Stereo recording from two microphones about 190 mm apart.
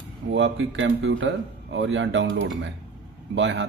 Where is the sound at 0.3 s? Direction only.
75° right (ahead or behind).